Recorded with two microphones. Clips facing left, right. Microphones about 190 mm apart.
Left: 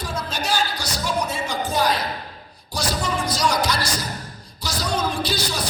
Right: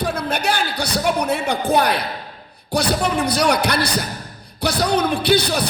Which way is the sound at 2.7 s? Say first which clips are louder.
Right 6 dB; 60° right (ahead or behind).